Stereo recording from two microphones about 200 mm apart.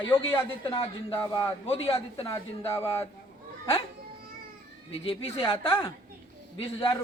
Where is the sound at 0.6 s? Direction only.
25° left (ahead or behind).